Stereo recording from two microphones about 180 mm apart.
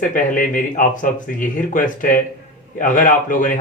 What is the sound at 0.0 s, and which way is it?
Speech, 50° left (ahead or behind).